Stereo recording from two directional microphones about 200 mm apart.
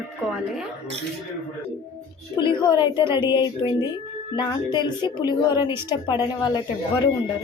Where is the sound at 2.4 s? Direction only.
25° left (ahead or behind).